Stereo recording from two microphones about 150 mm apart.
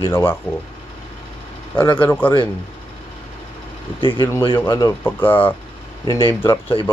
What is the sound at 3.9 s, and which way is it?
Speech, 35° left (ahead or behind).